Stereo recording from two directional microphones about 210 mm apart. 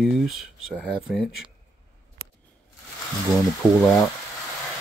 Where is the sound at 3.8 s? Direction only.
Centre (ahead or behind).